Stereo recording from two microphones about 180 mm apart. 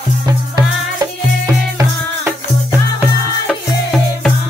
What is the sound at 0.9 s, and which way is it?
Music, 20° right (ahead or behind).